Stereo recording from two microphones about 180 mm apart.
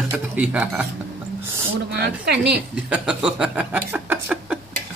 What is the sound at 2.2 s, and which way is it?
Speech, 65° right (ahead or behind).